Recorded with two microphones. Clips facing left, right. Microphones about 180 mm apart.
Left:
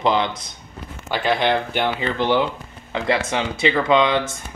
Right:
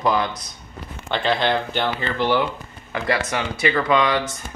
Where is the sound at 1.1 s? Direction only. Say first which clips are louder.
Left 1 dB; 10° left (ahead or behind).